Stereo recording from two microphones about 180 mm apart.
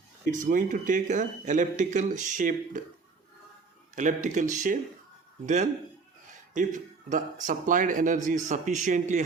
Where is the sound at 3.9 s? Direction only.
45° right (ahead or behind).